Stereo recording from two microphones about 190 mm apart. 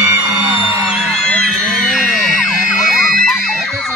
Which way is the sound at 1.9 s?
Centre (ahead or behind).